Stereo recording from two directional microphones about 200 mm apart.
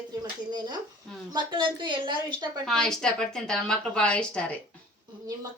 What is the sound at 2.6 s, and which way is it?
A woman's voice, centre (ahead or behind).